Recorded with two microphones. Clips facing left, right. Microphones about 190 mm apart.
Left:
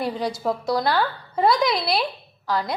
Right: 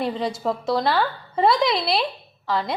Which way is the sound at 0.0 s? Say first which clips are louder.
Right 1 dB; centre (ahead or behind).